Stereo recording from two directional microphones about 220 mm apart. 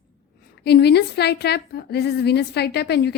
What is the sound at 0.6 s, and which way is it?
A woman's voice, 45° left (ahead or behind).